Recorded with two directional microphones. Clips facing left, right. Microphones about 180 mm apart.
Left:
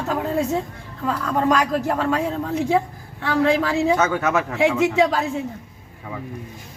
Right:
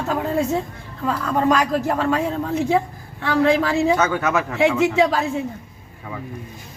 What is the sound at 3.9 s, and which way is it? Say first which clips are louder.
Speech: even; 25° left (ahead or behind).